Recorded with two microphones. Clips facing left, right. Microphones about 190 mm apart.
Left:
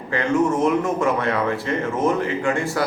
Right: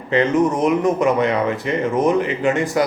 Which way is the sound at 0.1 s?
20° right (ahead or behind).